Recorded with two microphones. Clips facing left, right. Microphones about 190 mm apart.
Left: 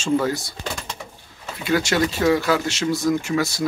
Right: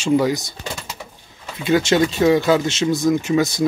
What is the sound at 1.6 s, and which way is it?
Speech, 20° right (ahead or behind).